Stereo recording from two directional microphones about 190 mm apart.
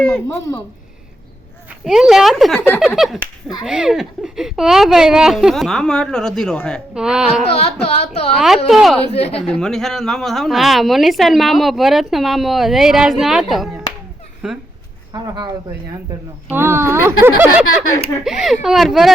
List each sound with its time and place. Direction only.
0.3 s speech: 15° left (ahead or behind)
1.8 s a woman's voice: centre (ahead or behind)
2.6 s speech: 10° left (ahead or behind)
2.8 s a woman's voice: centre (ahead or behind)
7.5 s carnatic music: 30° left (ahead or behind)
8.4 s a woman's voice: centre (ahead or behind)
9.1 s carnatic music: 35° left (ahead or behind)
9.5 s a woman's voice: 5° left (ahead or behind)
15.1 s a woman's voice: 20° right (ahead or behind); by 19.1 s centre (ahead or behind)